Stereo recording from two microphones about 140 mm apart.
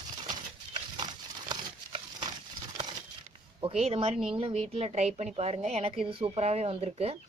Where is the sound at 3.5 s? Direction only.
45° right (ahead or behind).